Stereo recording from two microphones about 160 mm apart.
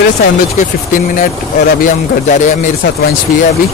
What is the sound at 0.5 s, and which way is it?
Speech, 55° left (ahead or behind).